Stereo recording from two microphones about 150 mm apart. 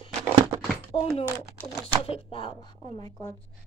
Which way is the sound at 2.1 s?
35° left (ahead or behind).